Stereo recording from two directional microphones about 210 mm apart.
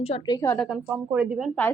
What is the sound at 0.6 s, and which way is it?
A woman's voice, 5° right (ahead or behind).